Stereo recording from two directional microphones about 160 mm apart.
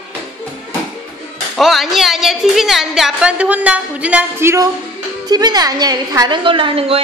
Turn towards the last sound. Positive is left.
turn(degrees=-35)  # may be behind; listen again after turning